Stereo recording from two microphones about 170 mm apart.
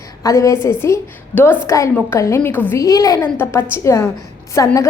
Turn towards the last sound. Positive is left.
turn(degrees=20)  # may be behind; listen again after turning